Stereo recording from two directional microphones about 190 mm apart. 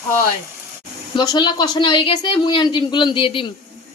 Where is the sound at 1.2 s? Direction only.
25° left (ahead or behind).